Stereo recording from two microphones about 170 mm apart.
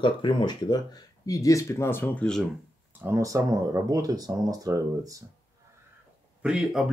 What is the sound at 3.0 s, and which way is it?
Speech, 15° right (ahead or behind).